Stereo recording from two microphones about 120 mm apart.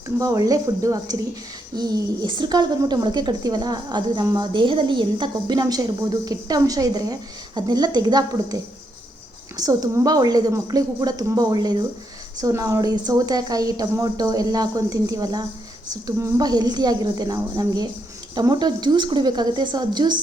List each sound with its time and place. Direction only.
0.2 s a woman's voice: 30° right (ahead or behind)